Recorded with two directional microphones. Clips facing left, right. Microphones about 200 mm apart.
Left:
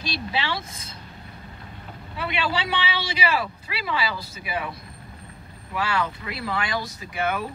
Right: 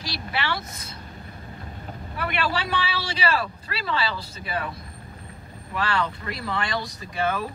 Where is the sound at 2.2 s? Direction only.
15° left (ahead or behind).